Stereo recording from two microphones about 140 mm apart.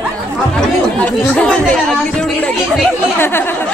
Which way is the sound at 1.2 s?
10° left (ahead or behind).